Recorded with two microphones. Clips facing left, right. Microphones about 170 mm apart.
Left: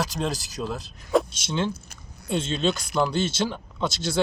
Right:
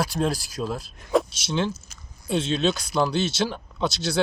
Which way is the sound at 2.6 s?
Centre (ahead or behind).